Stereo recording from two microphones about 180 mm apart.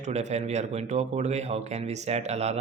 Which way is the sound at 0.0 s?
40° right (ahead or behind).